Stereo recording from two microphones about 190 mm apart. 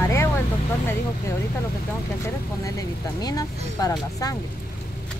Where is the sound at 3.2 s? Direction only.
20° left (ahead or behind).